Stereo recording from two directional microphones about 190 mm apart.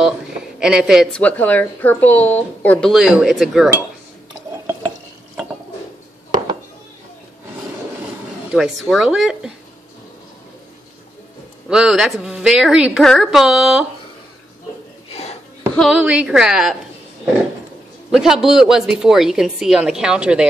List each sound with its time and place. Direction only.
0.0 s a woman's voice: 5° right (ahead or behind)
2.9 s a woman's voice: 5° right (ahead or behind)
8.5 s a woman's voice: centre (ahead or behind)
11.7 s a woman's voice: 5° right (ahead or behind)
15.0 s a sound: 35° left (ahead or behind)
15.7 s a woman's voice: centre (ahead or behind)
18.1 s a woman's voice: 5° right (ahead or behind)